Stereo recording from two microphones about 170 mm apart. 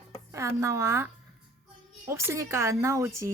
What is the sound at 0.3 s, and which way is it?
A woman's voice, 15° right (ahead or behind).